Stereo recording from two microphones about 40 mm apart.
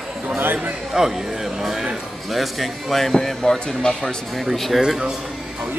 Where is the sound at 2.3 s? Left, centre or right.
Centre.